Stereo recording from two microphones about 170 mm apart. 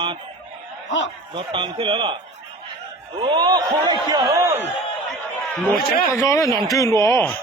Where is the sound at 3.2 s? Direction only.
25° right (ahead or behind).